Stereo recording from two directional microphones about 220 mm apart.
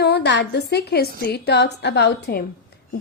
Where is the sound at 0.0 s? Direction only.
50° left (ahead or behind).